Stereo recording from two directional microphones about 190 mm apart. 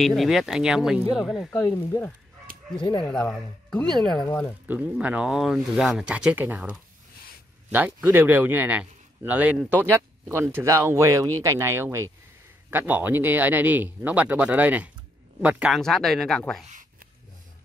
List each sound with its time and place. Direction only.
0.0 s speech: centre (ahead or behind)
1.5 s speech: 15° left (ahead or behind)
2.8 s speech: 25° left (ahead or behind)
3.1 s speech: centre (ahead or behind)
4.6 s a man's voice: 10° right (ahead or behind)